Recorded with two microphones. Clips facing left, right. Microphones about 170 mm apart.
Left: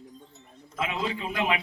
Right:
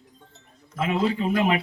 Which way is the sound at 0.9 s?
40° right (ahead or behind).